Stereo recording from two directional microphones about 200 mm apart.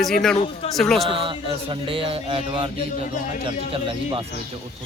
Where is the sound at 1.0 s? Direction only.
25° right (ahead or behind).